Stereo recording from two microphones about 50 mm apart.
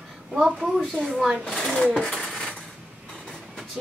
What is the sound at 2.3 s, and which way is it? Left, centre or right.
Coin, left.